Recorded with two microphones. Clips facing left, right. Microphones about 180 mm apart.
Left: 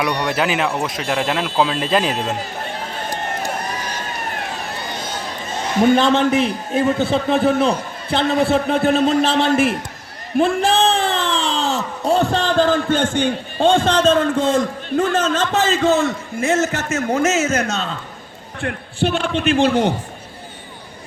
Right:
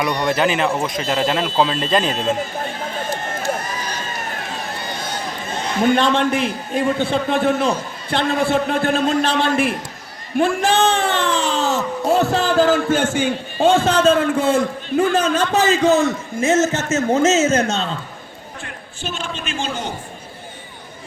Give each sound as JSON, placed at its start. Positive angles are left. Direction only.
{"t": 0.0, "sound": "a man's voice", "side_deg": 5}
{"t": 6.1, "sound": "a man's voice", "side_deg": 0}
{"t": 18.6, "sound": "a man's voice", "side_deg": 60}